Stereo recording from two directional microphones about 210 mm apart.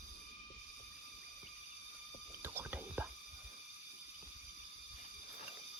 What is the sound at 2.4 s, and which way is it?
Whispering, 10° right (ahead or behind).